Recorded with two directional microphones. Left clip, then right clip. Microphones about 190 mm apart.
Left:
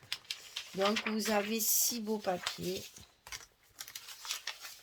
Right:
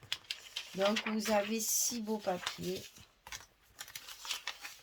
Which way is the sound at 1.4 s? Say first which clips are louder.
Left 2 dB; 40° left (ahead or behind).